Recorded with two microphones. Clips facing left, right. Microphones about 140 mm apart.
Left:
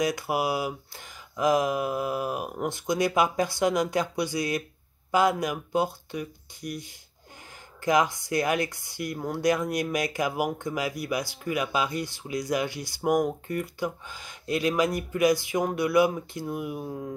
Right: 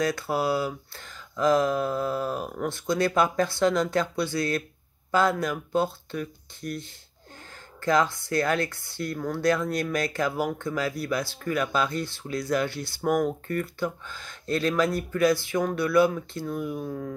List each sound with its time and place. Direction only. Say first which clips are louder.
0.0 s speech: right 1 dB; 15° left (ahead or behind)